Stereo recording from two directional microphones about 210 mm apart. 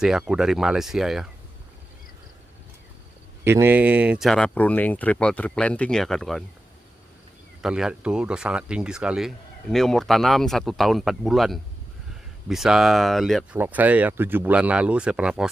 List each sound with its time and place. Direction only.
0.0 s speech: 5° right (ahead or behind)
3.4 s speech: 10° right (ahead or behind)
7.6 s speech: centre (ahead or behind)